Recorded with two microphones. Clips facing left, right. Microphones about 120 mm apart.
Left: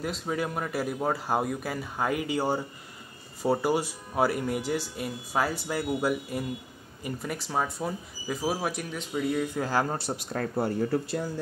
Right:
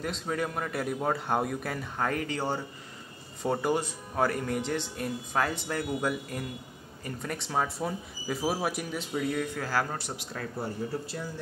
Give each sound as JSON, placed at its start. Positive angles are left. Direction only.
{"t": 0.0, "sound": "a man's voice", "side_deg": 5}
{"t": 9.6, "sound": "speech", "side_deg": 20}
{"t": 10.6, "sound": "speech", "side_deg": 65}